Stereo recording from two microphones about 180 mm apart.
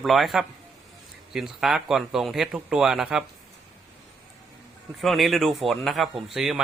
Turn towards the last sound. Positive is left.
turn(degrees=-5)  # may be behind; listen again after turning